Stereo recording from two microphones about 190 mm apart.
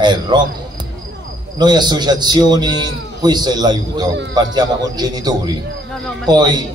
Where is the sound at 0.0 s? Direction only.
25° right (ahead or behind).